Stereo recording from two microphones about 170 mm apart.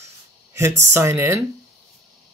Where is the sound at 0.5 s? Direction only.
15° right (ahead or behind).